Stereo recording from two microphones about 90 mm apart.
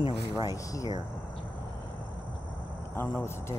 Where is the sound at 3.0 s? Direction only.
30° left (ahead or behind).